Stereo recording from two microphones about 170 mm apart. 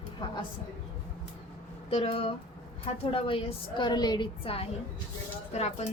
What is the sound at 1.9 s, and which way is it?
A woman's voice, 35° left (ahead or behind).